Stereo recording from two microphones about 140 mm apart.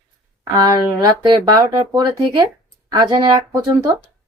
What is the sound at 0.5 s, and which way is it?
Speech, 25° right (ahead or behind).